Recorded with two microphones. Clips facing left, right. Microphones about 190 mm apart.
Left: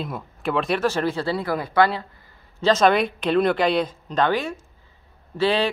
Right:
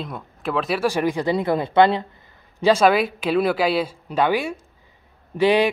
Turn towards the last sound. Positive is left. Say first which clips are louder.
# right 4 dB
turn(degrees=-15)  # may be behind; listen again after turning